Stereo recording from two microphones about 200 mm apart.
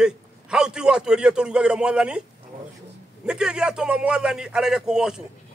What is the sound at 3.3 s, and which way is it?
A man's voice, 5° right (ahead or behind).